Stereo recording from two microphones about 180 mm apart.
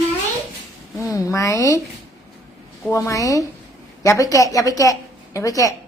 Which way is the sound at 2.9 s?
15° left (ahead or behind).